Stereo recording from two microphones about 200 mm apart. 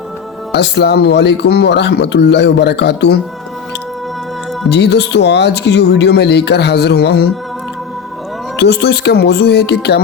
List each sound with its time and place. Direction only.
0.5 s speech: 55° left (ahead or behind)
4.7 s speech: 60° left (ahead or behind)
8.5 s speech: 55° left (ahead or behind)